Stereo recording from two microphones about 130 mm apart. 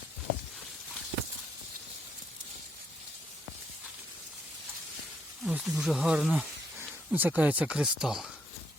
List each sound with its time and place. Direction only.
5.4 s speech: 5° right (ahead or behind)
6.7 s speech: 15° right (ahead or behind)